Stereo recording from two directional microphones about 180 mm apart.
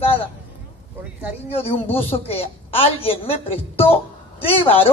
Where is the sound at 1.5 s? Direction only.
30° left (ahead or behind).